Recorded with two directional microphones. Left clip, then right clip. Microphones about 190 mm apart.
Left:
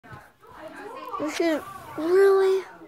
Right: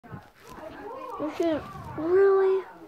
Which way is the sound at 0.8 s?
40° left (ahead or behind).